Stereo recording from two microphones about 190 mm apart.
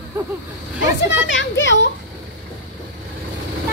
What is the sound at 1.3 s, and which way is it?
Speech, 75° left (ahead or behind).